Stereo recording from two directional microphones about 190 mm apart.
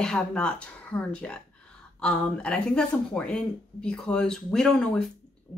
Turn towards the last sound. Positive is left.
turn(degrees=0)  # may be behind; listen again after turning